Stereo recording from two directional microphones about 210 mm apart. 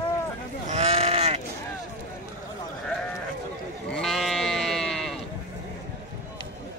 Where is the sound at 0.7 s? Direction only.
30° right (ahead or behind).